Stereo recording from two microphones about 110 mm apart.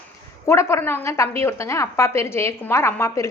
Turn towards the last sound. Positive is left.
turn(degrees=25)  # may be behind; listen again after turning